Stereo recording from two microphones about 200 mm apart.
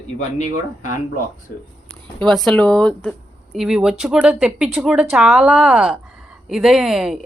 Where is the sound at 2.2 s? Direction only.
Centre (ahead or behind).